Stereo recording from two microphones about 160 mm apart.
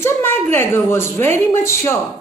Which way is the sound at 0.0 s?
15° left (ahead or behind).